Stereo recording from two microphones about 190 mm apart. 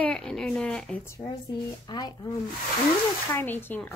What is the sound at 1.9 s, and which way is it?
Speech, 20° left (ahead or behind).